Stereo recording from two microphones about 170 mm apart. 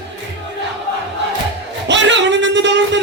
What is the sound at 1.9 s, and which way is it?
Music, 90° right.